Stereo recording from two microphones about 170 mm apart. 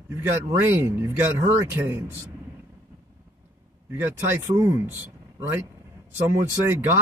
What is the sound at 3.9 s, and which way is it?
Speech, 15° right (ahead or behind).